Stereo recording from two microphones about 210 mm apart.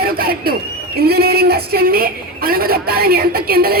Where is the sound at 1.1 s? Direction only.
50° right (ahead or behind).